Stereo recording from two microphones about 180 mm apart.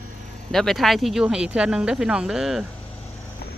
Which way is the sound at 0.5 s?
Centre (ahead or behind).